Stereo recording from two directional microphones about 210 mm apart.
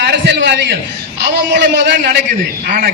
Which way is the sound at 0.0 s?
55° right (ahead or behind).